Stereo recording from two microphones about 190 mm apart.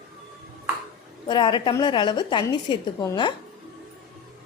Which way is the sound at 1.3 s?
25° left (ahead or behind).